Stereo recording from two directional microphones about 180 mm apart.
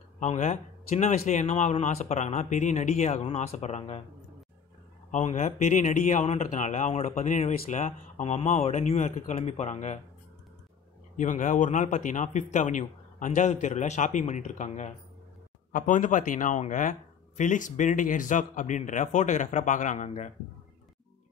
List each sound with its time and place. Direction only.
0.2 s speech: 40° left (ahead or behind)
5.1 s speech: 40° left (ahead or behind)
11.1 s speech: 45° left (ahead or behind)